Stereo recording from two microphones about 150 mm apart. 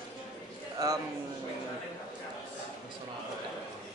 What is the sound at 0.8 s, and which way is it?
Speech, 25° right (ahead or behind).